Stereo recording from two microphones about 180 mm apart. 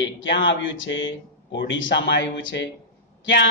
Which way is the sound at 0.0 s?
90° left.